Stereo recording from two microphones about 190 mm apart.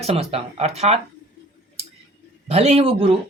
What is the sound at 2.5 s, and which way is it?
Speech, 30° right (ahead or behind).